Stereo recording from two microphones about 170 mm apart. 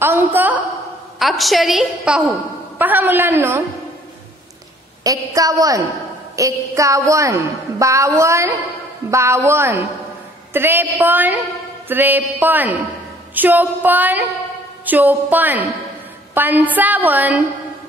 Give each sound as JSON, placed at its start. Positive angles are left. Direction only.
{"t": 0.0, "sound": "a woman's voice", "side_deg": -10}
{"t": 5.0, "sound": "a woman's voice", "side_deg": -20}